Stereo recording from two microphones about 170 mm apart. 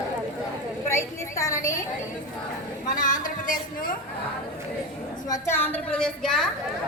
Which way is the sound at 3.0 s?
50° left (ahead or behind).